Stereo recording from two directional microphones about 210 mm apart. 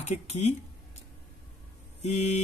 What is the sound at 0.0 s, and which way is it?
Speech, 30° left (ahead or behind).